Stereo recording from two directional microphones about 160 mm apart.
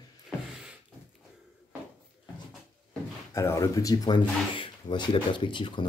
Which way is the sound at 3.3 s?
20° left (ahead or behind).